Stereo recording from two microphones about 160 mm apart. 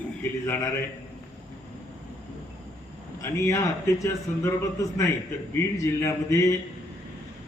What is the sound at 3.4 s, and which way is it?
A man's voice, 20° left (ahead or behind).